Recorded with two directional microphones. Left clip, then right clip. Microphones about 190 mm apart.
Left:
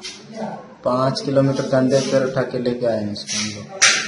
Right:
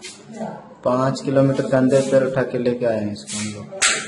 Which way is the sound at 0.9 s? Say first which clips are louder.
Left 1 dB; 35° right (ahead or behind).